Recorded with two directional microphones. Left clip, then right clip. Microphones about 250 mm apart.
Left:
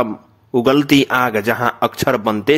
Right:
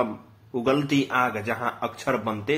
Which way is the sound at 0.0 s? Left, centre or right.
Left.